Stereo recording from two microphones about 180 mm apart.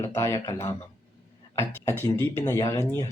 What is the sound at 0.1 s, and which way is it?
Speech, 15° left (ahead or behind).